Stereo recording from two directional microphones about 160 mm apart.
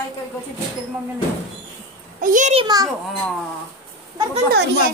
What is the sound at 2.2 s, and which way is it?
Speech, 55° right (ahead or behind).